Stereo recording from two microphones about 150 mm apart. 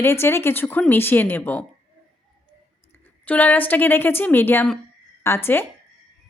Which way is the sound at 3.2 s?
10° left (ahead or behind).